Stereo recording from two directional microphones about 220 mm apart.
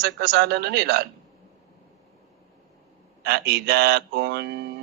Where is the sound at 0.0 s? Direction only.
50° right (ahead or behind).